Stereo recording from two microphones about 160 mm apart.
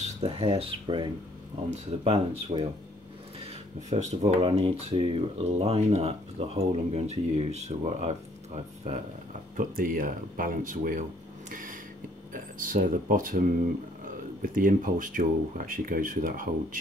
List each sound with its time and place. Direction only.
0.2 s speech: 35° right (ahead or behind)
9.6 s speech: 60° right (ahead or behind)
11.5 s a sound: 55° right (ahead or behind)
12.3 s speech: 55° right (ahead or behind)